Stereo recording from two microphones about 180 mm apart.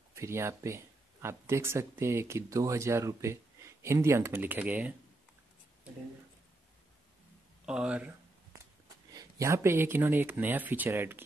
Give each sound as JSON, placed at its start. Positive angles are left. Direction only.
{"t": 0.1, "sound": "speech", "side_deg": -15}
{"t": 7.6, "sound": "speech", "side_deg": -5}
{"t": 9.1, "sound": "speech", "side_deg": -20}